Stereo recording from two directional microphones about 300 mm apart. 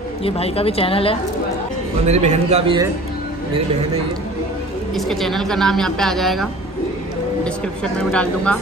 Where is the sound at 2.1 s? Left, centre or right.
Right.